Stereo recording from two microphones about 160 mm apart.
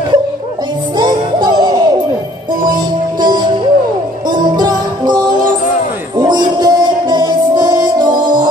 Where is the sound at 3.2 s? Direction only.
25° right (ahead or behind).